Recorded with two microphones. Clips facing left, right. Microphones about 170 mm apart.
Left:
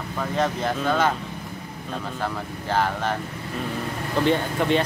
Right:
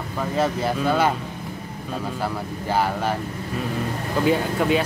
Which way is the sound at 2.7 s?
10° right (ahead or behind).